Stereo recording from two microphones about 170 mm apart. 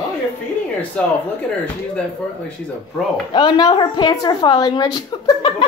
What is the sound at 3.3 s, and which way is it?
A woman's voice, 25° left (ahead or behind).